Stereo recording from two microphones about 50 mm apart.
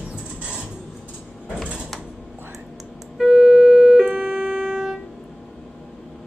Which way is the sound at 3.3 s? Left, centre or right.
Centre.